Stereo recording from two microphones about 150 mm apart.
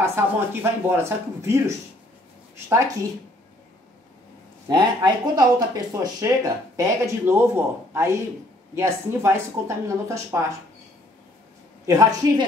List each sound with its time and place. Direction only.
0.0 s speech: 15° right (ahead or behind)
4.6 s speech: 30° right (ahead or behind)
11.8 s speech: 25° right (ahead or behind)